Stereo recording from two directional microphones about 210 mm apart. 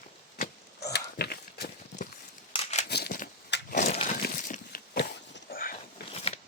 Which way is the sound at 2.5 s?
30° left (ahead or behind).